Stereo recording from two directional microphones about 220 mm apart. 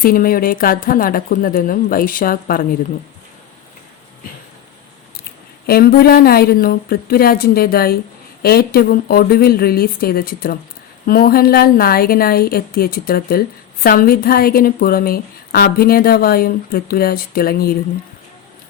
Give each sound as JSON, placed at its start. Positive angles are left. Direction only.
{"t": 0.0, "sound": "speech", "side_deg": 40}
{"t": 5.6, "sound": "a woman's voice", "side_deg": 45}